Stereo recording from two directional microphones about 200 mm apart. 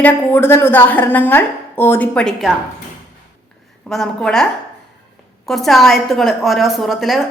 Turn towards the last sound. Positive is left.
turn(degrees=0)  # may be behind; listen again after turning